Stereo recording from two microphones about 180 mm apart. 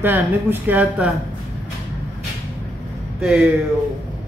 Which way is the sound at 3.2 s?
5° right (ahead or behind).